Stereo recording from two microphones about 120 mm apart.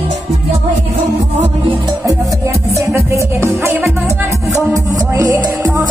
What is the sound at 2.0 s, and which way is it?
Music, 25° right (ahead or behind).